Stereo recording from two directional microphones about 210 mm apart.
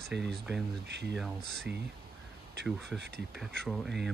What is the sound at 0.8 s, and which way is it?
Speech, 55° right (ahead or behind).